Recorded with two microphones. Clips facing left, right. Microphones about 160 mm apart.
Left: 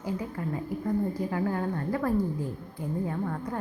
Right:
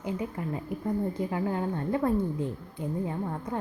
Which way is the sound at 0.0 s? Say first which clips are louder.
Even; 20° right (ahead or behind).